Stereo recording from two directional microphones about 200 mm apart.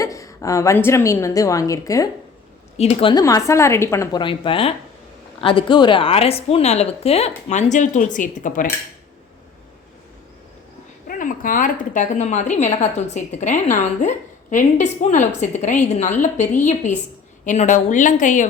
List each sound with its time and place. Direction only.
0.0 s a woman's voice: 15° left (ahead or behind)
2.7 s a woman's voice: 30° left (ahead or behind)
11.2 s a woman's voice: 40° left (ahead or behind)